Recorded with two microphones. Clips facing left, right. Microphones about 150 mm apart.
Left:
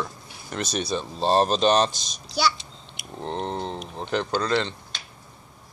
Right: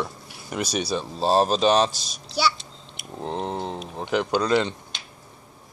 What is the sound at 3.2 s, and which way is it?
Speech, 5° right (ahead or behind).